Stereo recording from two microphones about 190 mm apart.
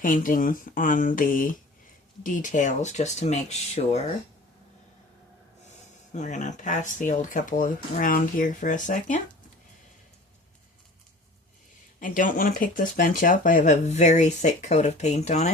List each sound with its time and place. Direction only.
0.0 s speech: 45° left (ahead or behind)
6.1 s speech: 40° left (ahead or behind)
11.9 s speech: 45° left (ahead or behind)